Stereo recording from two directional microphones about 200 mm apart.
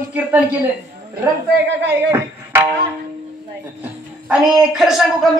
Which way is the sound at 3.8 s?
5° right (ahead or behind).